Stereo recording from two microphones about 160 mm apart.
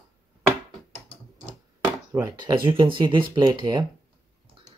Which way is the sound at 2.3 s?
30° right (ahead or behind).